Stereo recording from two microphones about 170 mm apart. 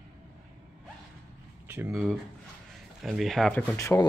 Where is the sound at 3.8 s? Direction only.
15° left (ahead or behind).